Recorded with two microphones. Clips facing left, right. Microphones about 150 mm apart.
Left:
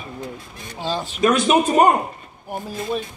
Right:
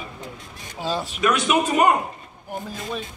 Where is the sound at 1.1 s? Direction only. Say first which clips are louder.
Left 5 dB; 35° left (ahead or behind).